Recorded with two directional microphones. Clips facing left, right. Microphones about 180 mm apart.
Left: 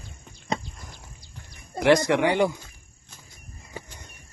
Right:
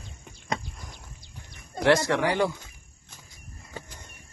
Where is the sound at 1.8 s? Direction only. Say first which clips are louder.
Left 3 dB; 15° left (ahead or behind).